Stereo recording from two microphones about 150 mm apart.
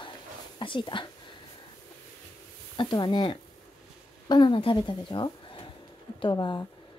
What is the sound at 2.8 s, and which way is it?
A woman's voice, 30° left (ahead or behind).